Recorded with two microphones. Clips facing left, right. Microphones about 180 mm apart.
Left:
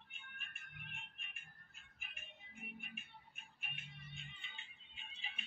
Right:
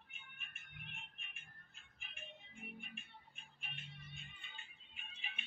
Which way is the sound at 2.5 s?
5° left (ahead or behind).